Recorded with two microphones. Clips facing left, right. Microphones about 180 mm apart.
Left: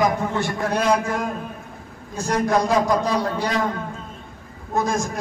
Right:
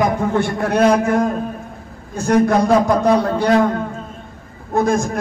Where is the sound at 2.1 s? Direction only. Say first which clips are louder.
Right 6 dB; 60° right (ahead or behind).